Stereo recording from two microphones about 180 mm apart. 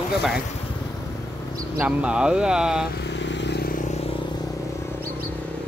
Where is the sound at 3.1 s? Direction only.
80° left.